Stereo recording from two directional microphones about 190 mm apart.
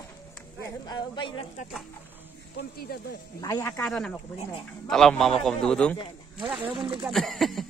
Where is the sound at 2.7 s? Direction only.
55° left (ahead or behind).